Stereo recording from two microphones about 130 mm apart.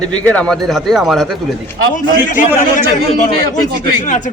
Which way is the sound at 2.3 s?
90° left.